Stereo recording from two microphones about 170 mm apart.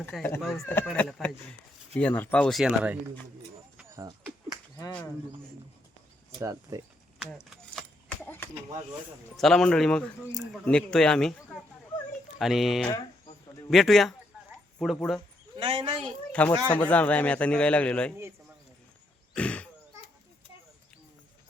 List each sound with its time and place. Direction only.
0.0 s a man's voice: 10° left (ahead or behind); by 3.0 s 5° right (ahead or behind)
6.4 s speech: 20° right (ahead or behind)
7.5 s keys jangling: 5° left (ahead or behind)
9.4 s speech: centre (ahead or behind)
15.5 s speech: 30° right (ahead or behind)
16.3 s a man's voice: 10° left (ahead or behind)
19.3 s throat clearing: 5° left (ahead or behind)